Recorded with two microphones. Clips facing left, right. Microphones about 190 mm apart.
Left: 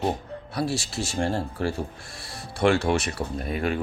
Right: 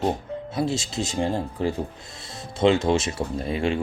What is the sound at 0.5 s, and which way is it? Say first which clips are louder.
Speech: right 2 dB; 20° right (ahead or behind).